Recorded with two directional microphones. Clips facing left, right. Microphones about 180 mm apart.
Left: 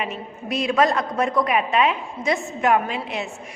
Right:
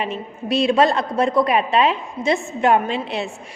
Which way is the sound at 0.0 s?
30° right (ahead or behind).